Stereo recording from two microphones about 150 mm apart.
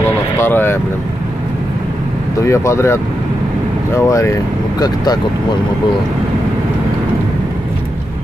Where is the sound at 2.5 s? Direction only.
20° left (ahead or behind).